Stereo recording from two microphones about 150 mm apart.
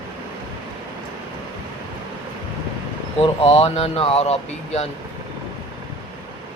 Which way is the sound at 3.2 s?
40° left (ahead or behind).